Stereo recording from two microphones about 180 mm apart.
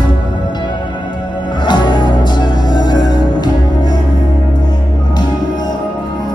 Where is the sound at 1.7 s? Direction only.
25° left (ahead or behind).